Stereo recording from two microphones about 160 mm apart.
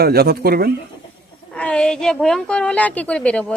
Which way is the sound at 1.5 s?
5° left (ahead or behind).